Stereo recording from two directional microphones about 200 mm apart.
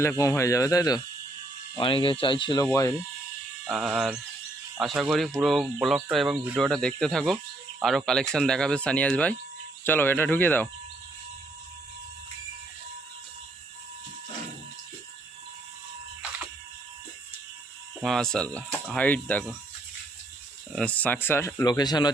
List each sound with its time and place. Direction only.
0.0 s speech: 15° left (ahead or behind)
3.7 s speech: 5° right (ahead or behind)
18.0 s speech: centre (ahead or behind)
20.7 s speech: 5° left (ahead or behind)